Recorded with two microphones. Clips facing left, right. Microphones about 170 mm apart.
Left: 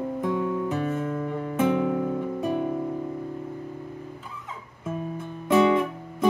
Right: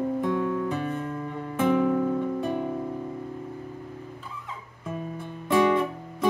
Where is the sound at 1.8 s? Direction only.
10° left (ahead or behind).